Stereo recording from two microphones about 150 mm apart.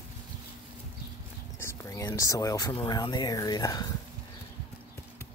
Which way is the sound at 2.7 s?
30° left (ahead or behind).